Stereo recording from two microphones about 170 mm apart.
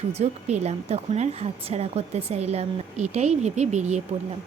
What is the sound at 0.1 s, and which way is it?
Speech, 40° right (ahead or behind).